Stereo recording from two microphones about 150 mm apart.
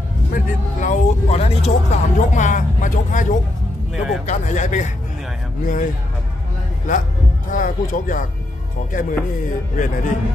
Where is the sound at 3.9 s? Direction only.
Centre (ahead or behind).